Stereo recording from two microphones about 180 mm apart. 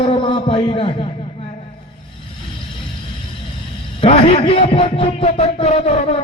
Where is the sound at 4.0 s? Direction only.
30° left (ahead or behind).